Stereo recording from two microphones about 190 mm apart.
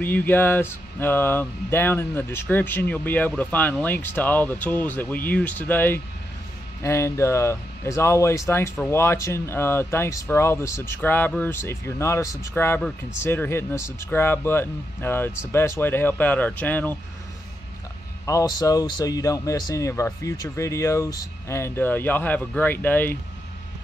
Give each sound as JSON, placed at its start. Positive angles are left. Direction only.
{"t": 0.0, "sound": "speech", "side_deg": 10}
{"t": 18.2, "sound": "speech", "side_deg": 15}